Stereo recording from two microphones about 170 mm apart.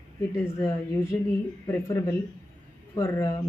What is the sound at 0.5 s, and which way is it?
Speech, 15° left (ahead or behind).